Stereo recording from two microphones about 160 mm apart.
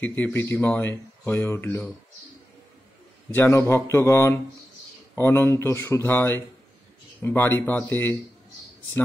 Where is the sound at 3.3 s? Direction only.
15° left (ahead or behind).